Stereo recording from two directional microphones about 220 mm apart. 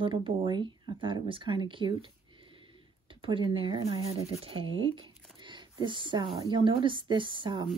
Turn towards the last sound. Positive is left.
turn(degrees=-20)  # may be behind; listen again after turning